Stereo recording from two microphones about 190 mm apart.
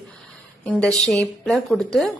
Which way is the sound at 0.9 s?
Centre (ahead or behind).